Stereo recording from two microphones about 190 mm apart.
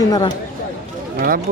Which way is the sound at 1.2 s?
50° right (ahead or behind).